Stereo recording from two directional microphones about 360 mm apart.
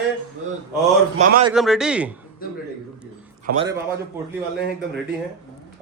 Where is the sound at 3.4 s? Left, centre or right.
Right.